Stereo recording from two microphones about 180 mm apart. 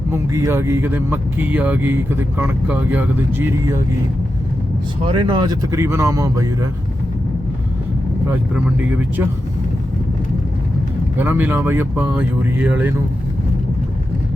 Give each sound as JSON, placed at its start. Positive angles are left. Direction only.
{"t": 0.1, "sound": "speech", "side_deg": -15}
{"t": 5.0, "sound": "speech", "side_deg": -25}
{"t": 8.3, "sound": "speech", "side_deg": -10}
{"t": 11.2, "sound": "speech", "side_deg": -10}